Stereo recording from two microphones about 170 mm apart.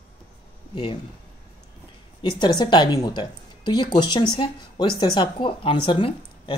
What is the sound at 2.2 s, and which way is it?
Speech, 30° left (ahead or behind).